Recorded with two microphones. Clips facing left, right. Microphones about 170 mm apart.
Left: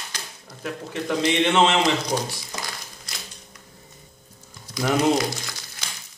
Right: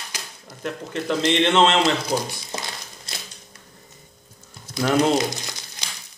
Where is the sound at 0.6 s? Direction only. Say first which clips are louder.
Right 2 dB; 10° left (ahead or behind).